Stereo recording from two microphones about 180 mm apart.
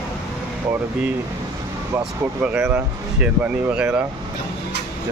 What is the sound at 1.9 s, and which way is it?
Speech, 10° right (ahead or behind).